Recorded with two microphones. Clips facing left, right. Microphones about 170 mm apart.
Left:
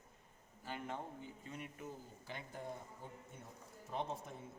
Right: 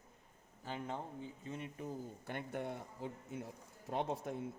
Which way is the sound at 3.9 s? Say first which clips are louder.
Right 5 dB; 75° right (ahead or behind).